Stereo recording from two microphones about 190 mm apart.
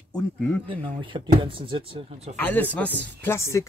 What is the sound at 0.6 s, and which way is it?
Speech, 25° right (ahead or behind).